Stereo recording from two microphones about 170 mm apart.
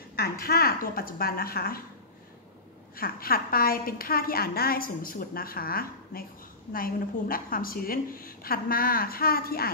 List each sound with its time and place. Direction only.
0.2 s a woman's voice: 65° left (ahead or behind)
3.0 s a woman's voice: 60° left (ahead or behind)